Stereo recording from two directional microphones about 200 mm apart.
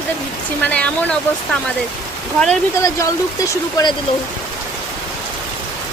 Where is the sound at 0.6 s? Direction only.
5° left (ahead or behind).